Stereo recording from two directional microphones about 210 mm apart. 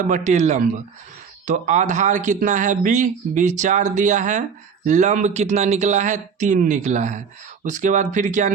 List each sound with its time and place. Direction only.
0.0 s speech: 35° right (ahead or behind)